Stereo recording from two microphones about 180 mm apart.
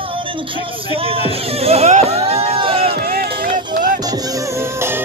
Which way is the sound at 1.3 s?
35° right (ahead or behind).